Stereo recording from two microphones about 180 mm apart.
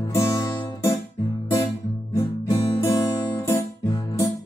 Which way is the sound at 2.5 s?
25° left (ahead or behind).